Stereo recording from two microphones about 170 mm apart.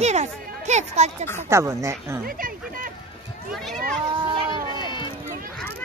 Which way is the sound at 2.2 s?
55° right (ahead or behind).